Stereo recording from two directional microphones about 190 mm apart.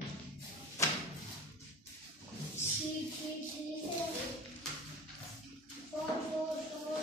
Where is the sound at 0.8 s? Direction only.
15° left (ahead or behind).